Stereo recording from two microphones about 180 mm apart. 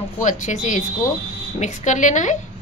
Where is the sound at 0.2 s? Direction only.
45° left (ahead or behind).